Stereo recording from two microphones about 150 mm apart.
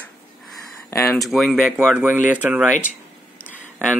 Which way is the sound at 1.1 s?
Centre (ahead or behind).